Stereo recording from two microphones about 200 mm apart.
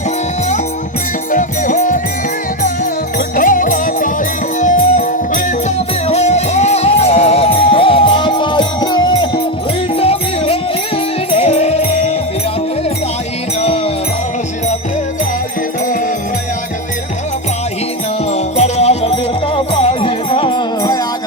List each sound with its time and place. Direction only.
1.3 s music: 40° left (ahead or behind)
3.2 s music: 40° left (ahead or behind)
18.3 s music: 30° left (ahead or behind)